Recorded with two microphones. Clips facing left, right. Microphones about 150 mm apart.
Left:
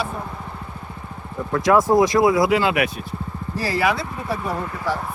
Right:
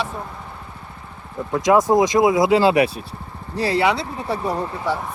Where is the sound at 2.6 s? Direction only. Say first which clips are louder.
Right 5 dB; 30° right (ahead or behind).